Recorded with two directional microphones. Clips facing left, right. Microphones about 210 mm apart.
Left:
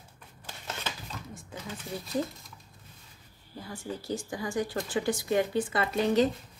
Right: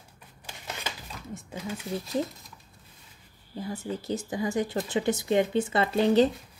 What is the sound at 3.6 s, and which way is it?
Speech, 20° right (ahead or behind).